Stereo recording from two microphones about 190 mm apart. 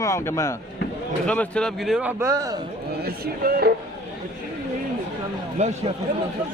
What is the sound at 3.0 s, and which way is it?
Speech, 55° right (ahead or behind).